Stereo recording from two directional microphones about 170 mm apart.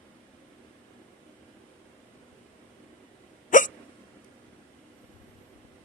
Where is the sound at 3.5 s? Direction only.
50° left (ahead or behind).